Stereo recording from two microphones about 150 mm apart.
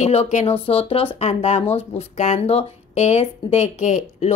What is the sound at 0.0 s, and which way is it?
Speech, 45° left (ahead or behind).